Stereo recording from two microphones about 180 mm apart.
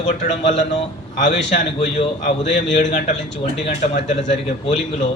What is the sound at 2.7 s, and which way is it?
Speech, 40° left (ahead or behind).